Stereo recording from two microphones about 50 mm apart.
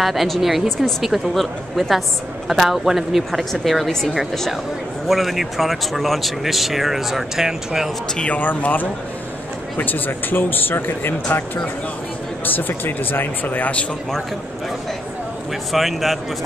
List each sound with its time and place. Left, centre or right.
0.0 s speech: centre
8.3 s speech: left
15.7 s speech: centre